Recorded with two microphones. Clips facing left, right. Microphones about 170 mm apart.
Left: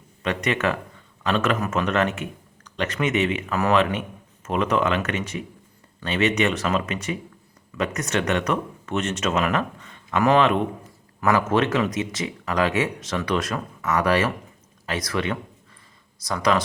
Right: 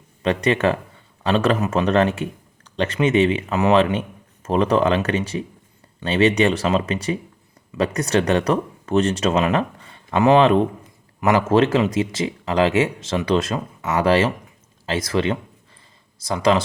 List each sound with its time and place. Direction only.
0.2 s speech: 30° right (ahead or behind)